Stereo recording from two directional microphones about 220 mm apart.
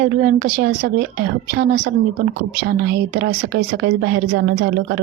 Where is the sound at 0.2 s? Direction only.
45° right (ahead or behind).